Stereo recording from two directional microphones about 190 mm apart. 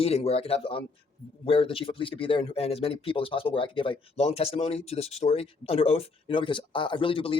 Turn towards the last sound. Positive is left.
turn(degrees=30)  # may be behind; listen again after turning